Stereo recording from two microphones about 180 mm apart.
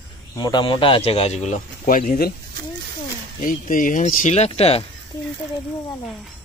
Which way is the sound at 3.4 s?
50° left (ahead or behind).